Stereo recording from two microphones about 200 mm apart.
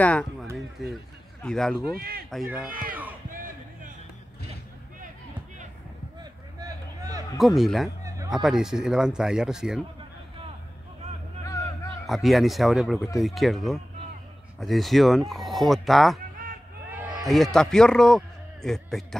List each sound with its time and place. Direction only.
0.0 s speech: 5° left (ahead or behind)
2.0 s speech: 50° right (ahead or behind)
2.4 s speech: 10° right (ahead or behind)
2.9 s crowd: 10° right (ahead or behind)
3.3 s a sound: 45° right (ahead or behind)
6.6 s a sound: 15° right (ahead or behind)
7.3 s speech: centre (ahead or behind)
11.4 s a sound: 15° left (ahead or behind)
12.1 s a man's voice: centre (ahead or behind)